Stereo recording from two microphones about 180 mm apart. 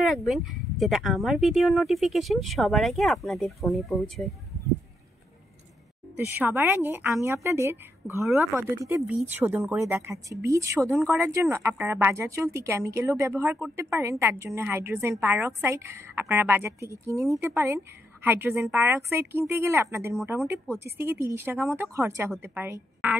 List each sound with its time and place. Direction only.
0.0 s speech: centre (ahead or behind)
6.1 s a woman's voice: 10° right (ahead or behind)